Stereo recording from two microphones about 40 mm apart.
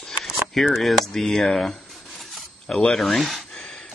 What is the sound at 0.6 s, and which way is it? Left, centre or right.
Speech, centre.